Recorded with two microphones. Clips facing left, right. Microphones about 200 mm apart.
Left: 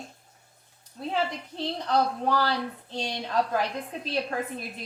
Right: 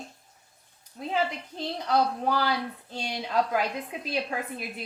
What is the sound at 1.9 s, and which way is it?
A woman's voice, 10° right (ahead or behind).